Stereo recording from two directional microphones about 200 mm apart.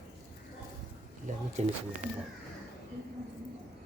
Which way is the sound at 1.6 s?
35° right (ahead or behind).